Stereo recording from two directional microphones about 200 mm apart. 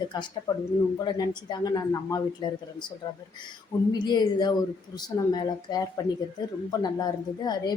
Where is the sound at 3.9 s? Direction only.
20° left (ahead or behind).